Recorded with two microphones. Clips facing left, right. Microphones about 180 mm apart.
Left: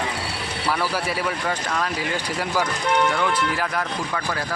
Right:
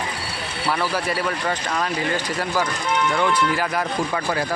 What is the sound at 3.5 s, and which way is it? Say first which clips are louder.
Speech: right 2 dB; 5° right (ahead or behind).